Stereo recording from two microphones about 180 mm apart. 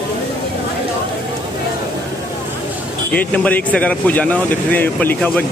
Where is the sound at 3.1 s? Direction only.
10° left (ahead or behind).